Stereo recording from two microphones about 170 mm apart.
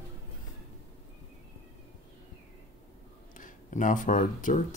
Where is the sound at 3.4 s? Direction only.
50° left (ahead or behind).